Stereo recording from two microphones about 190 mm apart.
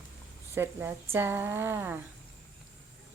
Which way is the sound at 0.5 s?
10° right (ahead or behind).